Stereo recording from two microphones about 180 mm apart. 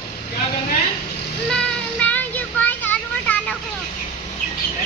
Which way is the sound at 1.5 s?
5° left (ahead or behind).